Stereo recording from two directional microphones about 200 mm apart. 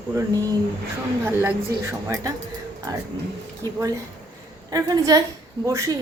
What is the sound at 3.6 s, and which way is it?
A woman's voice, 20° right (ahead or behind).